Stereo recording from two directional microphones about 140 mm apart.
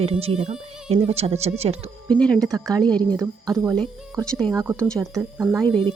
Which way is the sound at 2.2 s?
5° left (ahead or behind).